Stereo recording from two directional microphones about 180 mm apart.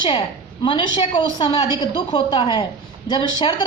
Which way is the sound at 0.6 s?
25° left (ahead or behind).